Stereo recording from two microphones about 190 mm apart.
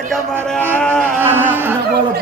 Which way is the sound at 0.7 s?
5° left (ahead or behind).